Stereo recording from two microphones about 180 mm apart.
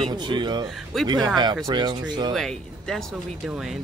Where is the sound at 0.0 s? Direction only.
25° right (ahead or behind).